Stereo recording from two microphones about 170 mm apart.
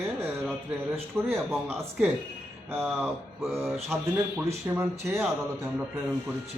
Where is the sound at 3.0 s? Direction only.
10° right (ahead or behind).